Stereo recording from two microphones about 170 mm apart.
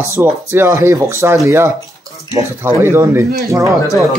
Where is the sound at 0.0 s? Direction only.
15° right (ahead or behind).